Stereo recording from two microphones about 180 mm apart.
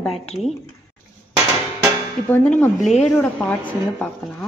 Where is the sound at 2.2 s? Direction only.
10° left (ahead or behind).